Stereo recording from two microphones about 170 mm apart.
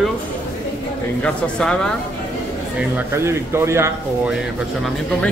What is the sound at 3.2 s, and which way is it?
Speech, 15° right (ahead or behind).